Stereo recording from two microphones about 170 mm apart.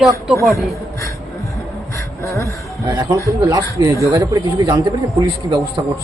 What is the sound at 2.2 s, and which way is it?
Speech, 15° left (ahead or behind).